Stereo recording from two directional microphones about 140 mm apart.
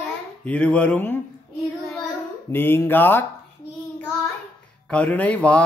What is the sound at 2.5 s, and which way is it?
Speech, 15° left (ahead or behind).